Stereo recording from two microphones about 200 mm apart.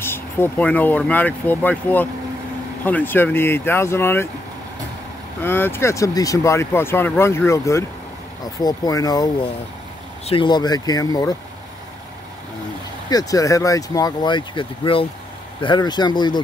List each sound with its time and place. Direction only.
0.0 s speech: 10° left (ahead or behind)
5.4 s speech: 10° left (ahead or behind)
13.1 s speech: 15° left (ahead or behind)